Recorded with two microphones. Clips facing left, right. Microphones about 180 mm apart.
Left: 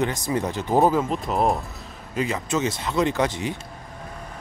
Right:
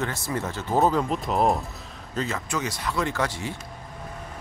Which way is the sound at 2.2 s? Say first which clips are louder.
Left 4 dB; 15° left (ahead or behind).